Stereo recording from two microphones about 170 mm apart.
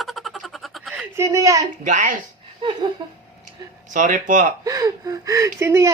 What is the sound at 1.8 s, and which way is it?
Speech, 50° right (ahead or behind).